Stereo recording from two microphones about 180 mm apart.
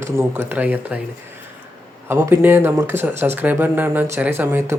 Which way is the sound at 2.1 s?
15° right (ahead or behind).